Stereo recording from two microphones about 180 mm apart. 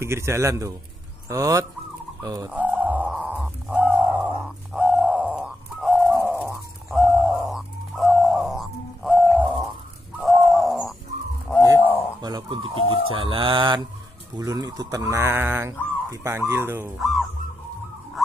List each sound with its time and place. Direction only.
0.0 s speech: 15° right (ahead or behind)
2.5 s bird: 10° right (ahead or behind)
6.1 s a sound: 10° right (ahead or behind)
10.2 s bird: centre (ahead or behind)
11.8 s a sound: 10° left (ahead or behind)
12.2 s speech: 20° right (ahead or behind)
17.0 s goose: centre (ahead or behind)